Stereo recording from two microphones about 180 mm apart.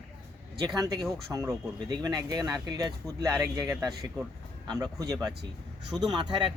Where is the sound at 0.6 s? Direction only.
20° right (ahead or behind).